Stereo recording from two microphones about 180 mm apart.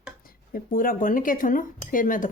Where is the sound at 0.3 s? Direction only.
50° left (ahead or behind).